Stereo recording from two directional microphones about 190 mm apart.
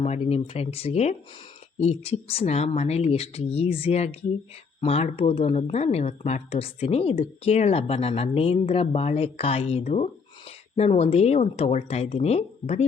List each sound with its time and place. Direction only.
0.0 s speech: 35° left (ahead or behind)